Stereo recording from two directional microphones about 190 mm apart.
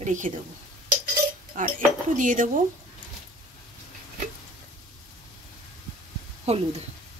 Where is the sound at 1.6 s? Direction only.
45° right (ahead or behind).